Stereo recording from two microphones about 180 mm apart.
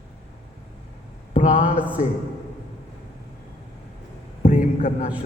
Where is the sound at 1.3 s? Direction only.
45° left (ahead or behind).